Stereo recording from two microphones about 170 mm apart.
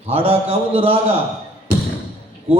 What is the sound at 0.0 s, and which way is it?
Speech, 35° right (ahead or behind).